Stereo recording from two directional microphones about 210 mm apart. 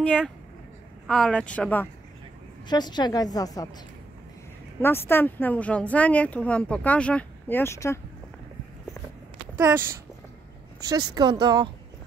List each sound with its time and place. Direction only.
1.0 s speech: 5° left (ahead or behind)
2.7 s a woman's voice: 20° left (ahead or behind)
4.8 s speech: 10° left (ahead or behind)
9.6 s speech: 15° right (ahead or behind)
10.9 s speech: 20° right (ahead or behind)